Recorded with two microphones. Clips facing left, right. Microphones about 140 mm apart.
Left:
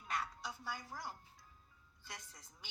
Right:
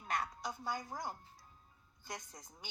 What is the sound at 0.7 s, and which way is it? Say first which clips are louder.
A woman's voice: right 6 dB; 45° right (ahead or behind).